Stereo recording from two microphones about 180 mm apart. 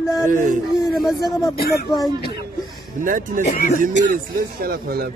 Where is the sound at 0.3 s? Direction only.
50° right (ahead or behind).